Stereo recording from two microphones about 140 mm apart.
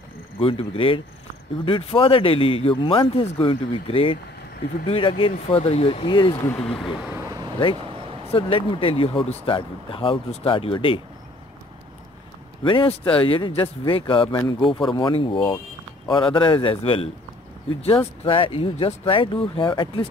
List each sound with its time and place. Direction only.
0.4 s speech: 40° left (ahead or behind)
6.4 s speech: 10° left (ahead or behind)
7.2 s vehicle: 25° right (ahead or behind)
8.3 s speech: 40° left (ahead or behind)
12.6 s speech: 35° left (ahead or behind)
18.2 s speech: 40° left (ahead or behind)